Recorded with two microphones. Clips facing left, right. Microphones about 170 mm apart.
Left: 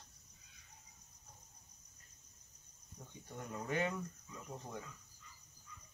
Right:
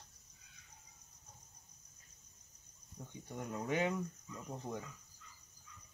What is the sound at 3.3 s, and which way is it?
Cricket, 15° right (ahead or behind).